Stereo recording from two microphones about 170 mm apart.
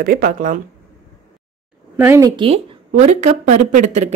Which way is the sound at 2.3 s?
30° right (ahead or behind).